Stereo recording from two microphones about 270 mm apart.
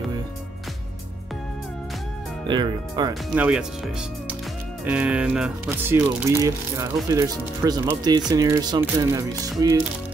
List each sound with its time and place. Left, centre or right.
2.4 s speech: centre
3.4 s speech: centre